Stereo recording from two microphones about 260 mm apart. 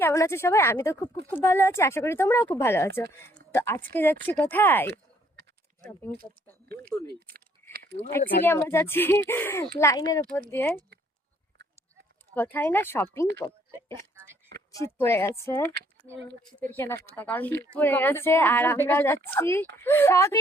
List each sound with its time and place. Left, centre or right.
0.0 s a woman's voice: centre
6.7 s speech: right
7.7 s a sound: right
8.4 s a woman's voice: centre
12.3 s a woman's voice: centre
13.4 s a sound: centre
14.7 s a woman's voice: centre